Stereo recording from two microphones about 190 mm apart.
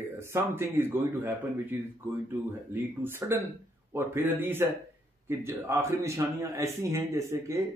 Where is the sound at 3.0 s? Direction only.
10° right (ahead or behind).